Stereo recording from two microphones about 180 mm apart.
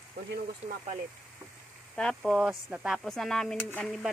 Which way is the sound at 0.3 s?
65° right (ahead or behind).